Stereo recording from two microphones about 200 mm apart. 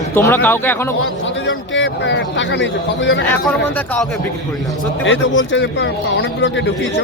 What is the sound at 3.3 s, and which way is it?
Speech, 10° left (ahead or behind).